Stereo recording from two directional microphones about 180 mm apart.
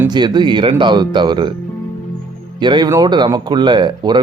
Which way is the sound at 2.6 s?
25° right (ahead or behind).